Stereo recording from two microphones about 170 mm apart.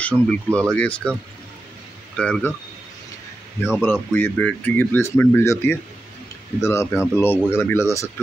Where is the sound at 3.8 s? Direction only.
10° left (ahead or behind).